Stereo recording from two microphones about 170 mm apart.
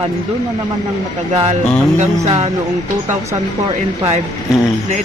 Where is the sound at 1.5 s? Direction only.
40° right (ahead or behind).